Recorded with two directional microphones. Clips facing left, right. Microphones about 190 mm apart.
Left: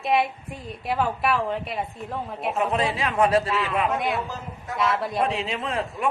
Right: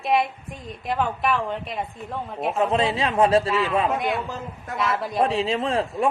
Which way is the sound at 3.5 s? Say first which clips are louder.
Right 2 dB; centre (ahead or behind).